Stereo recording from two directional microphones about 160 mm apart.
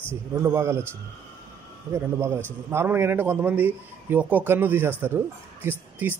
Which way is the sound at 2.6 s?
15° right (ahead or behind).